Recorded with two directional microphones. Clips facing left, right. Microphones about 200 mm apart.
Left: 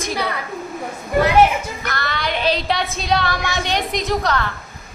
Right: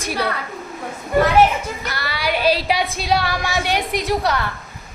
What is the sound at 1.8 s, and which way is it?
Music, 10° right (ahead or behind).